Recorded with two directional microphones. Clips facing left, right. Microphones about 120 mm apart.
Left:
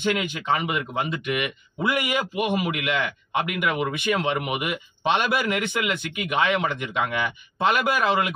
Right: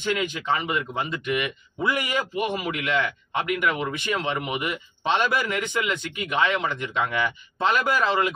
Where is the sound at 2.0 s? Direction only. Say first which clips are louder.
Left 1 dB; 15° left (ahead or behind).